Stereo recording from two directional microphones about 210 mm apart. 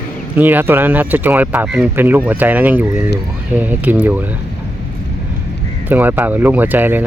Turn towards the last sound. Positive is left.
turn(degrees=-10)  # may be behind; listen again after turning